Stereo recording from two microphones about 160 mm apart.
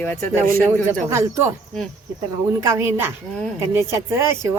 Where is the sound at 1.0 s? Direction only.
15° right (ahead or behind).